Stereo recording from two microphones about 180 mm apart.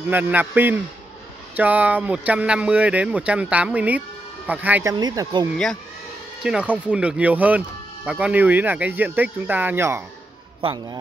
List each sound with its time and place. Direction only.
0.0 s speech: 10° right (ahead or behind)
4.9 s speech: 20° right (ahead or behind)
6.4 s speech: 5° right (ahead or behind)
10.6 s speech: 30° right (ahead or behind)